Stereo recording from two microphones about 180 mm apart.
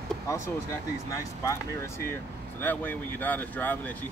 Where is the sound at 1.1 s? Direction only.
15° left (ahead or behind).